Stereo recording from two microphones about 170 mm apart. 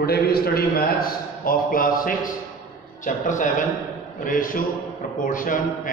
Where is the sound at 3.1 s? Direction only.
50° left (ahead or behind).